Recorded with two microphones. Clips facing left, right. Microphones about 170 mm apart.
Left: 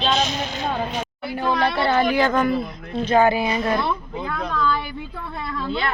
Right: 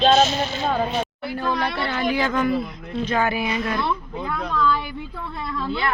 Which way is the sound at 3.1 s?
30° left (ahead or behind).